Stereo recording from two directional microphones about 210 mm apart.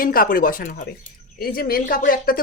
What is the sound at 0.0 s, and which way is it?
A woman's voice, 45° left (ahead or behind).